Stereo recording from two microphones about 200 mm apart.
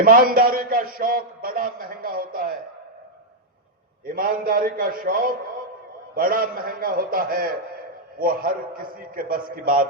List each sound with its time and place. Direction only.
0.0 s a man's voice: 45° right (ahead or behind)
4.0 s a man's voice: 45° right (ahead or behind)